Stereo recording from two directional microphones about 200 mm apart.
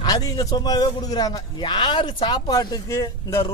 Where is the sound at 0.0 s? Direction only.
20° left (ahead or behind).